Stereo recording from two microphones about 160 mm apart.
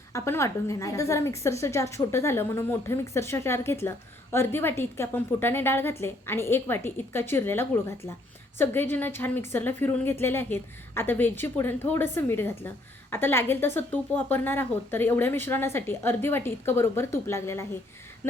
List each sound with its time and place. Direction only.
0.1 s a woman's voice: 15° left (ahead or behind)